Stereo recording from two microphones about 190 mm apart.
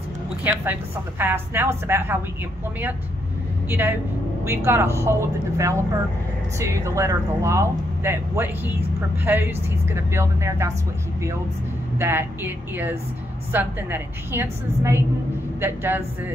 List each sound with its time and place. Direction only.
0.4 s speech: 10° right (ahead or behind)
3.6 s a woman's voice: 10° right (ahead or behind)
12.0 s speech: 10° right (ahead or behind)